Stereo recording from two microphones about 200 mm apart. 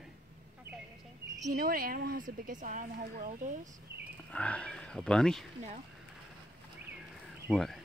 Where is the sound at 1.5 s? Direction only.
45° right (ahead or behind).